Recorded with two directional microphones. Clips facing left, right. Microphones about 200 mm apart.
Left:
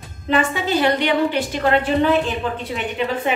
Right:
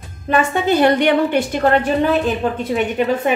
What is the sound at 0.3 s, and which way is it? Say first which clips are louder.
A woman's voice: right 3 dB; 50° right (ahead or behind).